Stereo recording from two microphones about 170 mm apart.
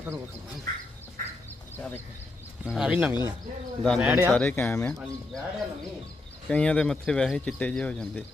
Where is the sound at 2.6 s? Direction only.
5° right (ahead or behind).